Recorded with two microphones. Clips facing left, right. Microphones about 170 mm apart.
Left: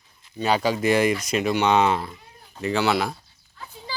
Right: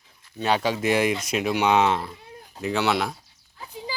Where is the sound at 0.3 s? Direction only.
Centre (ahead or behind).